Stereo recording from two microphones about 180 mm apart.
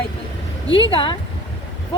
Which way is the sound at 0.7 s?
30° left (ahead or behind).